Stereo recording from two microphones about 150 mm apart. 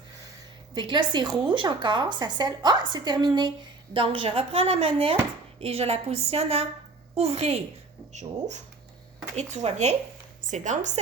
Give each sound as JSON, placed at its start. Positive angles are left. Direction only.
{"t": 0.7, "sound": "a woman's voice", "side_deg": -30}